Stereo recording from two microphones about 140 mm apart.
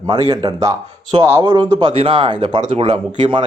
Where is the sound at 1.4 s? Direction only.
30° right (ahead or behind).